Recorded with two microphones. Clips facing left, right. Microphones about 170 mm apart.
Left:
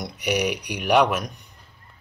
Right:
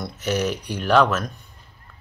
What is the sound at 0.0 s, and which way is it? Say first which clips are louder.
Speech: even; 15° left (ahead or behind).